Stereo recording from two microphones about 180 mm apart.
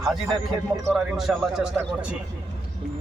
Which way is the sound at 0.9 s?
Centre (ahead or behind).